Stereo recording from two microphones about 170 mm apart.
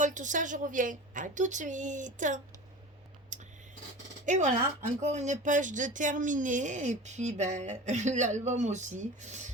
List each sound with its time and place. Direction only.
0.0 s speech: 45° right (ahead or behind)
3.3 s writing: 45° right (ahead or behind)
4.3 s speech: 45° right (ahead or behind)